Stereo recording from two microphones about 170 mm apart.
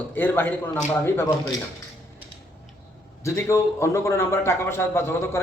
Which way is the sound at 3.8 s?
15° left (ahead or behind).